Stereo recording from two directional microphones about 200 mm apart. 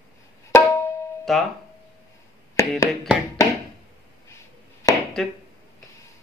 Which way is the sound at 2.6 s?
15° left (ahead or behind).